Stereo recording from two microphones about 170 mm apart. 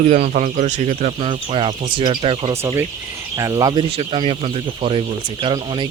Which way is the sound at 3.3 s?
20° right (ahead or behind).